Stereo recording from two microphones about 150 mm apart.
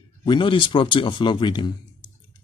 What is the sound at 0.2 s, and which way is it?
Speech, 30° left (ahead or behind).